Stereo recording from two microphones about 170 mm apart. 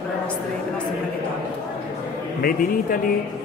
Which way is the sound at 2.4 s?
55° left (ahead or behind).